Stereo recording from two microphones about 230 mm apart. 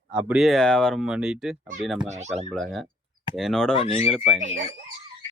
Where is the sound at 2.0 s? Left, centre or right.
Right.